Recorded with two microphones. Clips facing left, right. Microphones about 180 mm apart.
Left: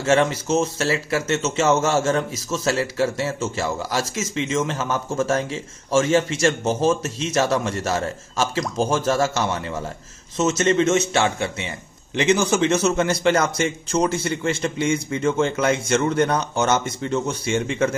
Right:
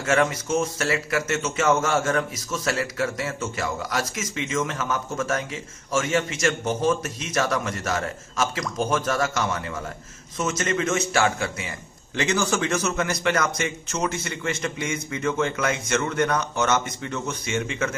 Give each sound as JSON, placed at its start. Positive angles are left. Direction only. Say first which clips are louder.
{"t": 0.0, "sound": "speech", "louder": "left 3 dB", "side_deg": 25}